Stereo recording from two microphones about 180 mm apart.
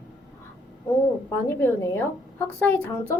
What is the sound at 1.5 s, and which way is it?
Speech, 15° left (ahead or behind).